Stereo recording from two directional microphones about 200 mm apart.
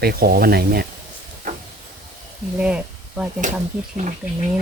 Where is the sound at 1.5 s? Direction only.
40° right (ahead or behind).